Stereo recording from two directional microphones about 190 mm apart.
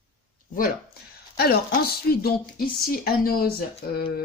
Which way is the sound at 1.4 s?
55° left (ahead or behind).